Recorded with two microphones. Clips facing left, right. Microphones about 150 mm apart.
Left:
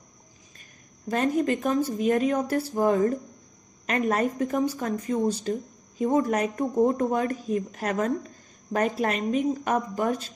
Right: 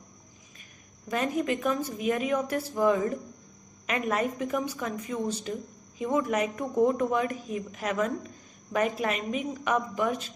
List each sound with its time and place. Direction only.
1.0 s a woman's voice: 35° left (ahead or behind)